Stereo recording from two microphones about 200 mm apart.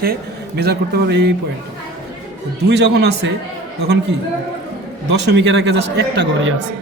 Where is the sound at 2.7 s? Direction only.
55° right (ahead or behind).